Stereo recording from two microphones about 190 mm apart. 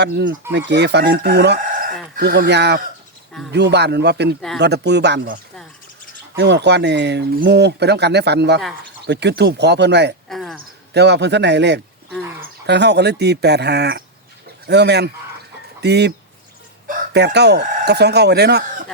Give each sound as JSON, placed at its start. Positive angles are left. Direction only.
{"t": 0.0, "sound": "speech", "side_deg": -60}
{"t": 10.2, "sound": "cricket", "side_deg": 0}
{"t": 10.6, "sound": "a man's voice", "side_deg": -60}
{"t": 16.9, "sound": "chicken", "side_deg": -60}